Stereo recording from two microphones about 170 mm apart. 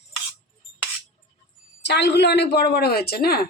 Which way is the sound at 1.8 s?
90° left.